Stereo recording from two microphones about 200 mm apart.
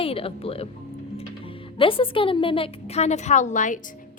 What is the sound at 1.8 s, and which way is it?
A woman's voice, 25° left (ahead or behind).